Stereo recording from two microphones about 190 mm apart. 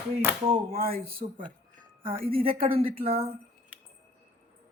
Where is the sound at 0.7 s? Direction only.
50° right (ahead or behind).